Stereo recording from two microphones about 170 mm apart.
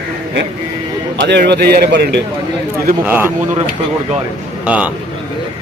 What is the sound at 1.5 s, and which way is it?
Speech, 70° right (ahead or behind).